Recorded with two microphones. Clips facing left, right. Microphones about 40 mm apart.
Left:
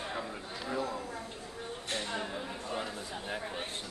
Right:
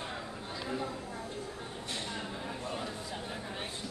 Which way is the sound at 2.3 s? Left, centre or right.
Left.